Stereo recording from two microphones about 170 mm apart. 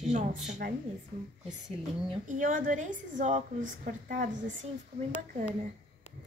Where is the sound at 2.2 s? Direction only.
50° right (ahead or behind).